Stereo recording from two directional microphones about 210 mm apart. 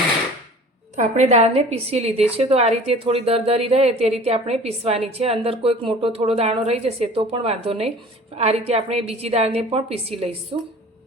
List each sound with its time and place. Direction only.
0.9 s a woman's voice: 35° right (ahead or behind)